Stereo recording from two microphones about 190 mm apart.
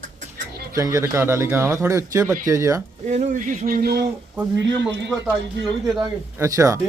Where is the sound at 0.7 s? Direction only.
15° right (ahead or behind).